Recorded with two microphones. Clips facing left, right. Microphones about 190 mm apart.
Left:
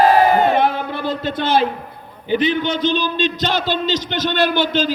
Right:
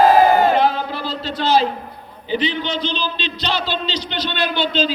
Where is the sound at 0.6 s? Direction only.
55° left (ahead or behind).